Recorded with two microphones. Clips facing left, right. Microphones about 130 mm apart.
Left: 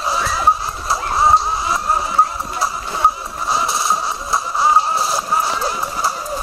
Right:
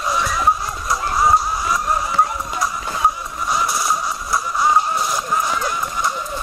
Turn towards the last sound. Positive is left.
turn(degrees=30)  # may be behind; listen again after turning